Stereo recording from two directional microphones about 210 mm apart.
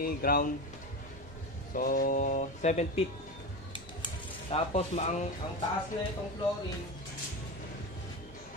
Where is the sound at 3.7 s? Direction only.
25° left (ahead or behind).